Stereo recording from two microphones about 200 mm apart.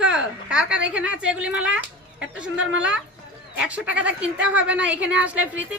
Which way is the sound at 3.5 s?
5° right (ahead or behind).